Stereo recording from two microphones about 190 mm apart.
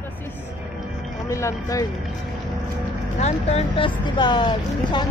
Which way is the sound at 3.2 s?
35° left (ahead or behind).